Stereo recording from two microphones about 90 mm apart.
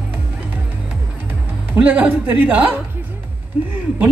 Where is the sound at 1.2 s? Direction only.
20° right (ahead or behind).